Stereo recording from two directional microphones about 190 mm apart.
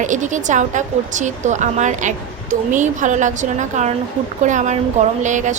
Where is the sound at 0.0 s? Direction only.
40° right (ahead or behind).